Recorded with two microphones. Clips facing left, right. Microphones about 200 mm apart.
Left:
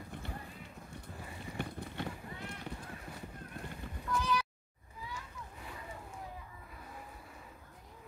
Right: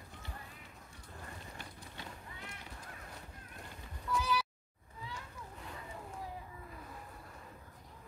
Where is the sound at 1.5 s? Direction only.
60° left (ahead or behind).